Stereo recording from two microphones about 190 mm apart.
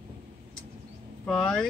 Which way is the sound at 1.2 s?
5° left (ahead or behind).